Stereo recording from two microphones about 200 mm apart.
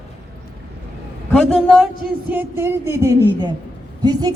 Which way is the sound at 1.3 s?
5° left (ahead or behind).